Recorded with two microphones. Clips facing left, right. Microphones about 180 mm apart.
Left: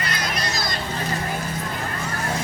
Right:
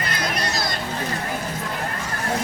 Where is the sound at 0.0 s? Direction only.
55° right (ahead or behind).